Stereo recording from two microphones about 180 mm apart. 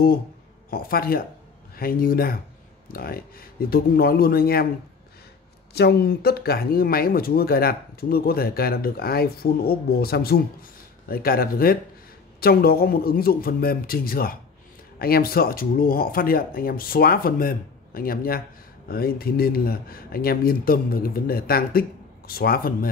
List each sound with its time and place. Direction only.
0.7 s speech: 55° left (ahead or behind)
5.8 s speech: 60° left (ahead or behind)